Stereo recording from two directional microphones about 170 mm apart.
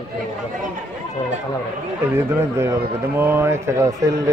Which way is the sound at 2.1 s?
15° right (ahead or behind).